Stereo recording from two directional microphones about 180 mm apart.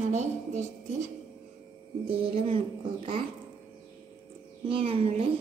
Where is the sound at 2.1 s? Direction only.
30° right (ahead or behind).